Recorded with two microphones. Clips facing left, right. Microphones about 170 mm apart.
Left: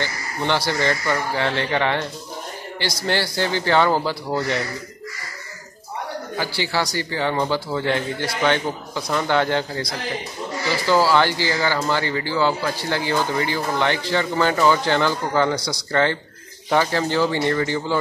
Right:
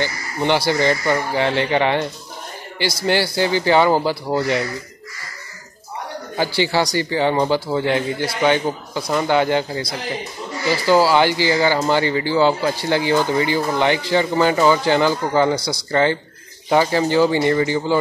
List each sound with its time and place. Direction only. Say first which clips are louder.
0.0 s speech: right 4 dB; 15° right (ahead or behind)
6.3 s speech: right 6 dB; 20° right (ahead or behind)